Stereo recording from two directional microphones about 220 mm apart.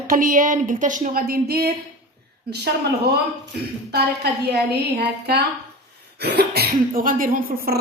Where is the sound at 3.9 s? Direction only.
45° right (ahead or behind).